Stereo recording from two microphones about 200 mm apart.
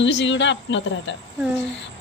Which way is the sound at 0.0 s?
65° left (ahead or behind).